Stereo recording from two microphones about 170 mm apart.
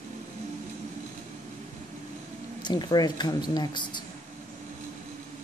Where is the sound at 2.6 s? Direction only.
25° left (ahead or behind).